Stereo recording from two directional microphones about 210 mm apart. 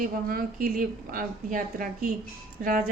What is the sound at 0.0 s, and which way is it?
Speech, 45° right (ahead or behind).